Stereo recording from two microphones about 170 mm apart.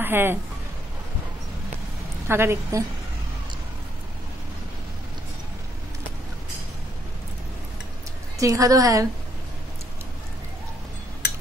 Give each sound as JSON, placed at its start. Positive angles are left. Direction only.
{"t": 0.0, "sound": "speech", "side_deg": -15}
{"t": 2.2, "sound": "a woman's voice", "side_deg": -15}
{"t": 8.4, "sound": "a woman's voice", "side_deg": -20}